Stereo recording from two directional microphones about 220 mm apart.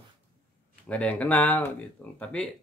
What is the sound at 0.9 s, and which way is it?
Speech, 5° left (ahead or behind).